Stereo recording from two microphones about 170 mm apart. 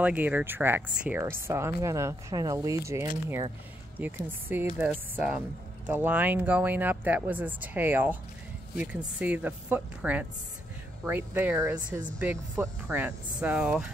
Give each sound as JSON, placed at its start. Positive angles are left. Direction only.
{"t": 0.0, "sound": "speech", "side_deg": -10}